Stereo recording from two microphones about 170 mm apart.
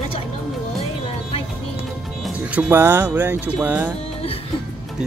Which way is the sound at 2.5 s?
10° right (ahead or behind).